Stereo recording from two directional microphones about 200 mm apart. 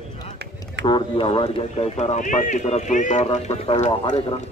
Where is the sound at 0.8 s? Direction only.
25° left (ahead or behind).